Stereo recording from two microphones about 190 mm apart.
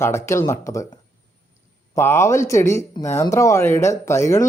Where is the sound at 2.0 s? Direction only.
15° left (ahead or behind).